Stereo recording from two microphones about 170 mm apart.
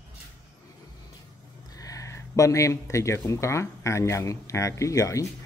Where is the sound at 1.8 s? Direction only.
20° left (ahead or behind).